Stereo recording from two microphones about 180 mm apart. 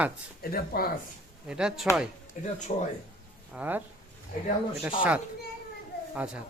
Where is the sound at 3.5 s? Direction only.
10° right (ahead or behind).